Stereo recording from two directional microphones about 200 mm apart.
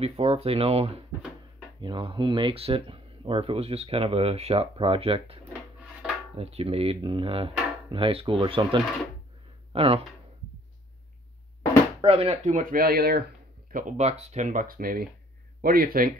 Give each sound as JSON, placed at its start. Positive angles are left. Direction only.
{"t": 0.0, "sound": "speech", "side_deg": -30}
{"t": 12.0, "sound": "speech", "side_deg": -30}